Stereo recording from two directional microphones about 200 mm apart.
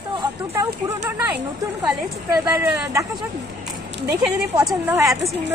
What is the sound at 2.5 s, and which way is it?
Speech, 10° right (ahead or behind).